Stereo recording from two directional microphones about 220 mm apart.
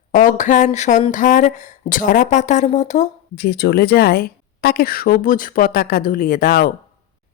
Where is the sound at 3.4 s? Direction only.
45° left (ahead or behind).